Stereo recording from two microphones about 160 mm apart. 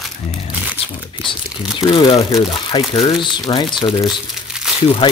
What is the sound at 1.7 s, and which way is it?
Speech, 30° left (ahead or behind).